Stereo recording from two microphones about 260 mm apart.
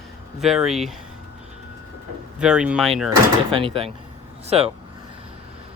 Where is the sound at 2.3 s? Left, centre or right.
Centre.